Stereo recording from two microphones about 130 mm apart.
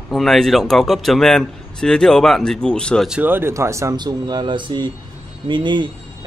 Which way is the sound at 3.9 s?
35° right (ahead or behind).